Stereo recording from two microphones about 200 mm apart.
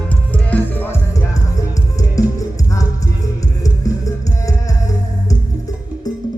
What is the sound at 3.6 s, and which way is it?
Music, 15° left (ahead or behind).